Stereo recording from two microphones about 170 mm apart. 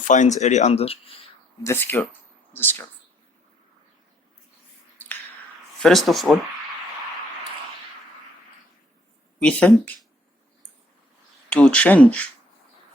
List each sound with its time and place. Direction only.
0.0 s speech: 45° left (ahead or behind)
1.6 s speech: 15° left (ahead or behind)
5.8 s speech: centre (ahead or behind)
9.4 s speech: 10° left (ahead or behind)
11.5 s speech: 5° left (ahead or behind)